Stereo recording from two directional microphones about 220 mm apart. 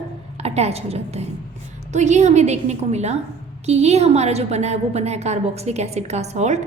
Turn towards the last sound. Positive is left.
turn(degrees=-30)  # may be behind; listen again after turning